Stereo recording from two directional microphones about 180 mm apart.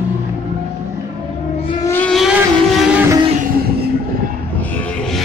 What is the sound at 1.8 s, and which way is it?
Vehicle, 10° left (ahead or behind).